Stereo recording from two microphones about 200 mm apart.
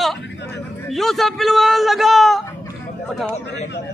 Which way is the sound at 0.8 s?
Centre (ahead or behind).